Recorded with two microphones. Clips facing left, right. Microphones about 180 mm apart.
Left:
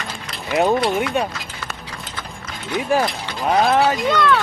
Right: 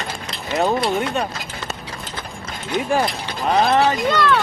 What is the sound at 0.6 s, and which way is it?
Speech, 10° left (ahead or behind).